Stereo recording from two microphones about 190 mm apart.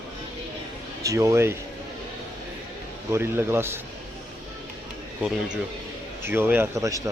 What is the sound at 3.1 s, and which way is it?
Speech, 10° right (ahead or behind).